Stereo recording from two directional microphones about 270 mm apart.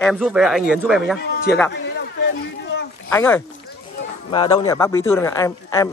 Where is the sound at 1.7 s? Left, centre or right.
Left.